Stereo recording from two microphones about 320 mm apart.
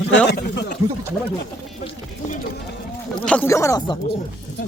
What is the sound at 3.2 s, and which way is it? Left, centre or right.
Speech, centre.